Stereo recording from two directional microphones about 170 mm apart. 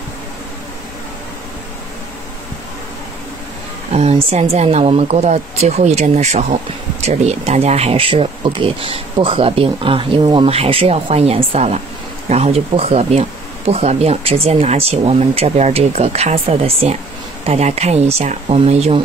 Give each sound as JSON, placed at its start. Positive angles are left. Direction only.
{"t": 3.9, "sound": "speech", "side_deg": -40}